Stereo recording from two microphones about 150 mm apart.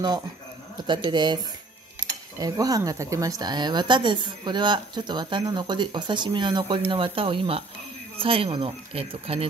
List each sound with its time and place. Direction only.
0.8 s a woman's voice: 30° right (ahead or behind)